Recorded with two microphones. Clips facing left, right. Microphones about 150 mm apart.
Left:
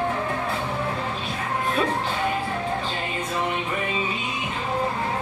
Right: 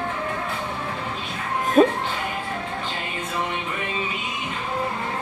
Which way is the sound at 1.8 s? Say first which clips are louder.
Right 10 dB; 45° right (ahead or behind).